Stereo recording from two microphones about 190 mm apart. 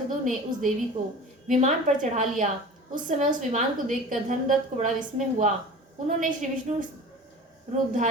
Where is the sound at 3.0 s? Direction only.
40° right (ahead or behind).